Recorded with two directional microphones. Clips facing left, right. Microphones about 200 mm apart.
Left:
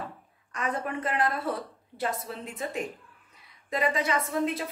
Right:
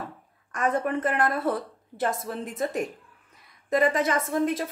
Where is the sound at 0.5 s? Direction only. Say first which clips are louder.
Right 6 dB; 50° right (ahead or behind).